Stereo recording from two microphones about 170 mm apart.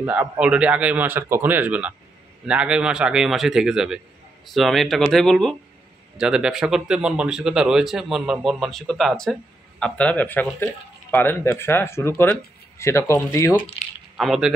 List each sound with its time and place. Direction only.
0.0 s a man's voice: 10° right (ahead or behind); by 13.6 s 15° left (ahead or behind)
14.1 s speech: centre (ahead or behind)